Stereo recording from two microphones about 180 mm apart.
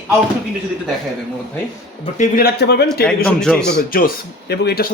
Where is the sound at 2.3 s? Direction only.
60° left (ahead or behind).